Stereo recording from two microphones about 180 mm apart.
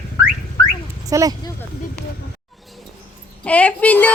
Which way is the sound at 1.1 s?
20° right (ahead or behind).